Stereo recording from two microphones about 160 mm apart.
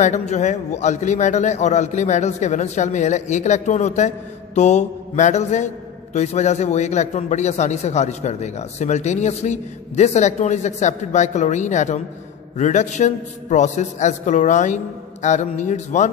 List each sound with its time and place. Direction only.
0.0 s a man's voice: 45° left (ahead or behind)